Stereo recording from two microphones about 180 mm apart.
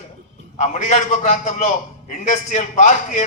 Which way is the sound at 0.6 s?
40° left (ahead or behind).